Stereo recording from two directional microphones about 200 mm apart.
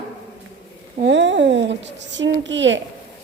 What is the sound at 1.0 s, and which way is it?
A child's voice, 65° right (ahead or behind).